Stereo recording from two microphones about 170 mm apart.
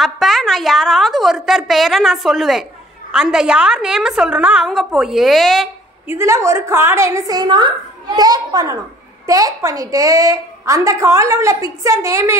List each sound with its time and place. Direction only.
0.0 s a woman's voice: centre (ahead or behind)
6.0 s a woman's voice: 15° right (ahead or behind)